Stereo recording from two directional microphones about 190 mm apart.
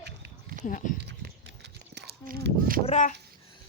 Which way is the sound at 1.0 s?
65° right (ahead or behind).